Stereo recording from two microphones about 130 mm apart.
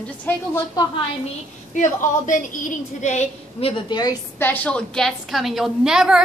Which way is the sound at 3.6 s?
30° left (ahead or behind).